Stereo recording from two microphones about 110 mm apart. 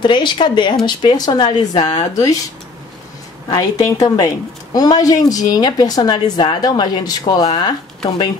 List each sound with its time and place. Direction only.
0.0 s a woman's voice: 45° left (ahead or behind)
3.4 s a woman's voice: 35° left (ahead or behind)